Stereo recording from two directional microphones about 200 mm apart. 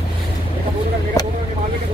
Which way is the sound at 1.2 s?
20° left (ahead or behind).